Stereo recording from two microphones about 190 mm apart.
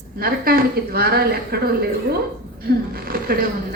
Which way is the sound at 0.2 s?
50° right (ahead or behind).